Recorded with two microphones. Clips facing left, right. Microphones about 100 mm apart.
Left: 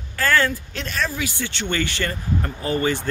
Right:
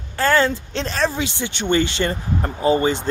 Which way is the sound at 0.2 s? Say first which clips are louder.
Right 3 dB; 25° right (ahead or behind).